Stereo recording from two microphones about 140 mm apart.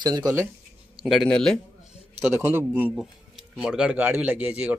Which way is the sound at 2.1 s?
15° right (ahead or behind).